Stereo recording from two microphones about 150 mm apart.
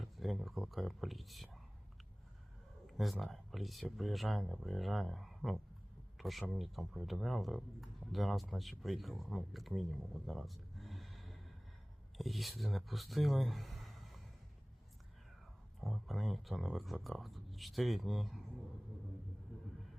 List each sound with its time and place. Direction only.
0.0 s speech: centre (ahead or behind)
2.8 s speech: centre (ahead or behind)
10.2 s a sound: centre (ahead or behind)
12.1 s speech: centre (ahead or behind)
15.8 s speech: centre (ahead or behind)